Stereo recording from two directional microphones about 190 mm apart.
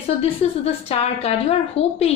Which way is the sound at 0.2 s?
30° left (ahead or behind).